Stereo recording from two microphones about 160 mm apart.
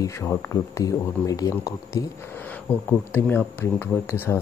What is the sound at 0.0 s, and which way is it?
Speech, 20° left (ahead or behind).